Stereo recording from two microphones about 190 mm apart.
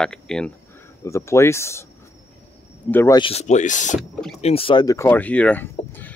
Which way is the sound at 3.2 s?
35° left (ahead or behind).